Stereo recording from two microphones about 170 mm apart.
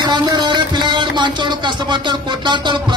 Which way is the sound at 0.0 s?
25° right (ahead or behind).